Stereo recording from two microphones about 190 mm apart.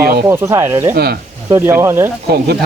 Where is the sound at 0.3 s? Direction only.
15° right (ahead or behind).